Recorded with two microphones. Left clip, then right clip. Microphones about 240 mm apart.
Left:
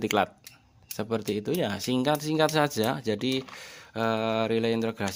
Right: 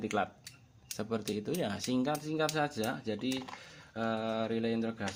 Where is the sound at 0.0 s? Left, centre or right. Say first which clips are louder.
Left 8 dB; left.